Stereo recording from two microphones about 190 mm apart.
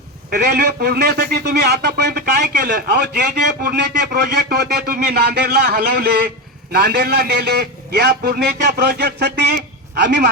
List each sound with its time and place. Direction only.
0.3 s a man's voice: 60° right (ahead or behind)